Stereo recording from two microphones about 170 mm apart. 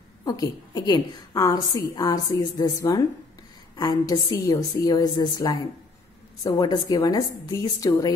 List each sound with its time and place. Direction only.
0.2 s a woman's voice: 20° left (ahead or behind)